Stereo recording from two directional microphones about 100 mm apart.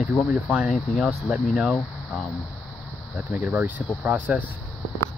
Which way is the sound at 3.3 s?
15° right (ahead or behind).